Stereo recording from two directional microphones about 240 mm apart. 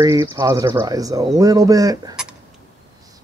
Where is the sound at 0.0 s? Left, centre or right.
Centre.